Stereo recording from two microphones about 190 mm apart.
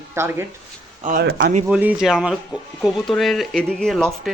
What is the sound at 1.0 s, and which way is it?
Speech, 55° right (ahead or behind).